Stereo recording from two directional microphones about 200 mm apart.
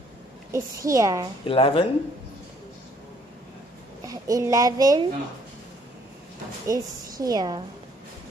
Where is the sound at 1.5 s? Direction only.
30° left (ahead or behind).